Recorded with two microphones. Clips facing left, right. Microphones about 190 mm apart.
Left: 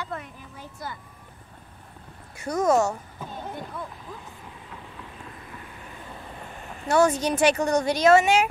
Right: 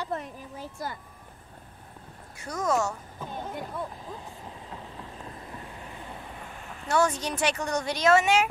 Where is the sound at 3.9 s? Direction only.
35° right (ahead or behind); by 6.5 s 10° right (ahead or behind).